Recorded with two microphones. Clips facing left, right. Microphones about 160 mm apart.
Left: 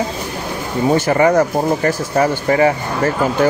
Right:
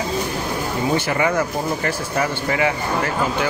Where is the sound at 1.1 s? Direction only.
40° left (ahead or behind).